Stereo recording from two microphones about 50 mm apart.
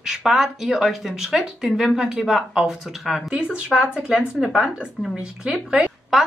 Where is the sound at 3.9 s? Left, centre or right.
Right.